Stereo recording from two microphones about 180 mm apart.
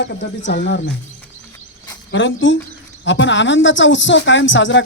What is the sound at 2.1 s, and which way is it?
Speech, 90° left.